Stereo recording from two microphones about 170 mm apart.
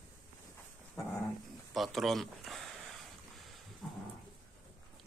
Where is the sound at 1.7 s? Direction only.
Centre (ahead or behind).